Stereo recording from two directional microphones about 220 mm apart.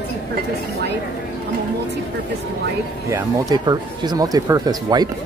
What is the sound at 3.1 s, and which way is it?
Speech, 20° right (ahead or behind).